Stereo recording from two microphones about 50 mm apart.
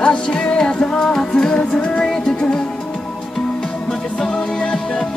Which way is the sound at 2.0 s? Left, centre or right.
Centre.